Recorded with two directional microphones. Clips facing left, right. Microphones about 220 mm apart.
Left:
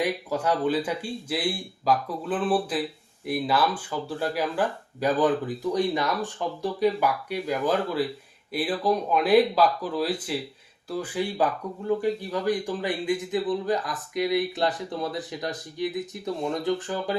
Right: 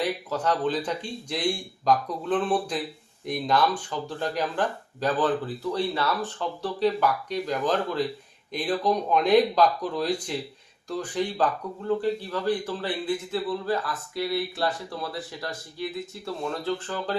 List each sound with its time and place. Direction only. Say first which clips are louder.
0.0 s speech: left 1 dB; 10° left (ahead or behind)